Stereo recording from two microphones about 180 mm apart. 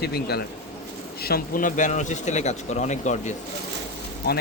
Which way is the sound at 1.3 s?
50° left (ahead or behind).